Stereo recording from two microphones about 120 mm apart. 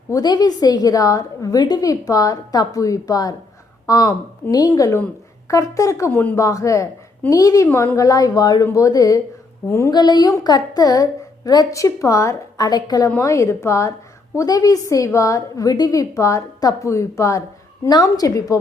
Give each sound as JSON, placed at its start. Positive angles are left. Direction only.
{"t": 0.1, "sound": "a woman's voice", "side_deg": 35}
{"t": 6.1, "sound": "a woman's voice", "side_deg": 15}
{"t": 6.4, "sound": "a woman's voice", "side_deg": 25}
{"t": 7.7, "sound": "a woman's voice", "side_deg": 15}
{"t": 7.9, "sound": "a woman's voice", "side_deg": 30}
{"t": 9.9, "sound": "a woman's voice", "side_deg": 35}